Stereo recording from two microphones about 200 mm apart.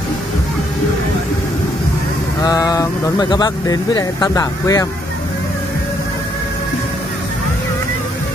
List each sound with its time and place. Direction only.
2.4 s speech: 20° left (ahead or behind)